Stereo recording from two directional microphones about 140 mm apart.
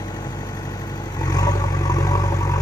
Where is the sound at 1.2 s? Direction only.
25° left (ahead or behind).